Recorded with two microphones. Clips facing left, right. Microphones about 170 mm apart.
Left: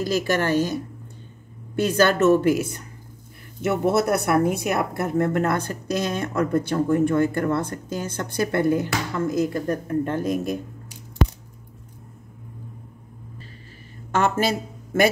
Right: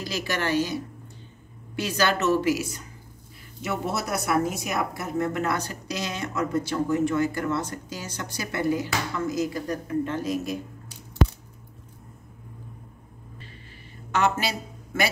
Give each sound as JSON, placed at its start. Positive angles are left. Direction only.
{"t": 0.0, "sound": "speech", "side_deg": 50}
{"t": 1.8, "sound": "speech", "side_deg": 50}
{"t": 14.1, "sound": "speech", "side_deg": 50}